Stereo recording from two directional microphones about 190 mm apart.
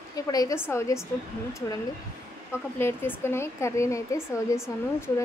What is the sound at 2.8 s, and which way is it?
Speech, 10° left (ahead or behind).